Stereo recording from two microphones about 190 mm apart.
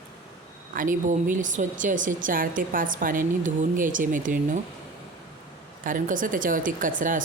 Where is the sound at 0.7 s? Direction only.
45° right (ahead or behind).